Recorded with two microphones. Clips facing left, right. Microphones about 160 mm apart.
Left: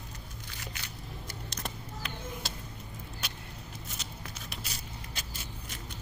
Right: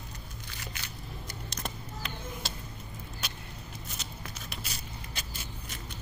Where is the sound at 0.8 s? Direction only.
80° right.